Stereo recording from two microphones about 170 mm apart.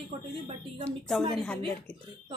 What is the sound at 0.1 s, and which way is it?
Speech, 30° right (ahead or behind).